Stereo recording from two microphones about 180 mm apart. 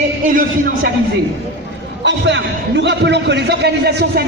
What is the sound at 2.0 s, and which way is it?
A man's voice, 85° right.